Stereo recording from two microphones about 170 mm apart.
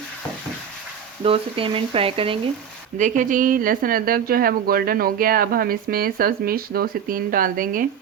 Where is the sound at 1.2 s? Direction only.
35° right (ahead or behind).